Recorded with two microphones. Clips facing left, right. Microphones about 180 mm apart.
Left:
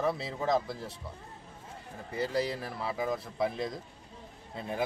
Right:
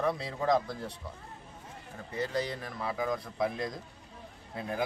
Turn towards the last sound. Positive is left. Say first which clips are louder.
# even
turn(degrees=0)  # may be behind; listen again after turning